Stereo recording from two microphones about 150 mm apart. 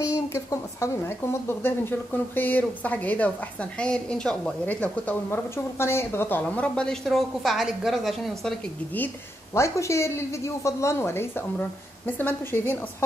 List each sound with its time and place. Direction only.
0.0 s a woman's voice: 20° left (ahead or behind); by 8.5 s centre (ahead or behind)
8.9 s a woman's voice: 15° left (ahead or behind)